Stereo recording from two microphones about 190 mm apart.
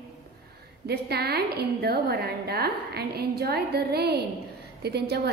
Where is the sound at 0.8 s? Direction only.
55° right (ahead or behind).